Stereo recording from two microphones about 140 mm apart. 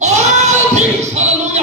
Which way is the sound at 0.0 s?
55° right (ahead or behind).